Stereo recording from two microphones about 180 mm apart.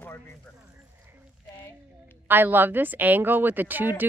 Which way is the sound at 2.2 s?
10° right (ahead or behind).